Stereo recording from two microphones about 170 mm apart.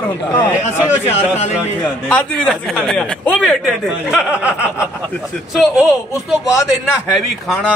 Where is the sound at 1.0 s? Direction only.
40° left (ahead or behind).